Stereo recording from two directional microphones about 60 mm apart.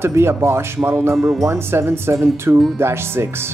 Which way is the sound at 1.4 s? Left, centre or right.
Right.